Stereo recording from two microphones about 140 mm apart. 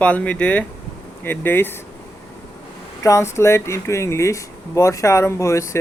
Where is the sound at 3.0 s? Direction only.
20° left (ahead or behind).